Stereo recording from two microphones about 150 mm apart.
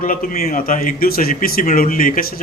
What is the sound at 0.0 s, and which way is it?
Speech, 70° left (ahead or behind).